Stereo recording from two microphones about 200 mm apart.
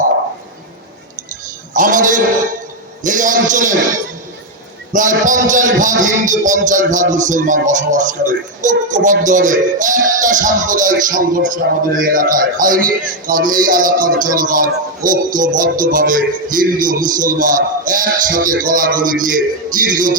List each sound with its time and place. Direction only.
1.7 s a man's voice: 40° right (ahead or behind)
4.9 s a man's voice: 40° right (ahead or behind)